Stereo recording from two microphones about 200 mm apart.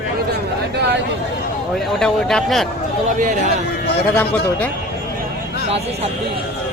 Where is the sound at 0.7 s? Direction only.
60° right (ahead or behind).